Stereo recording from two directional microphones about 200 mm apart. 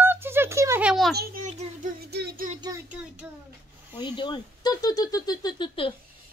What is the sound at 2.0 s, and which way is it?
Music, 55° right (ahead or behind).